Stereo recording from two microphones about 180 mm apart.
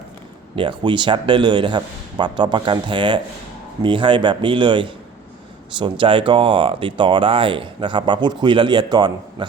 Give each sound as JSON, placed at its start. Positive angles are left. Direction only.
{"t": 0.5, "sound": "speech", "side_deg": -25}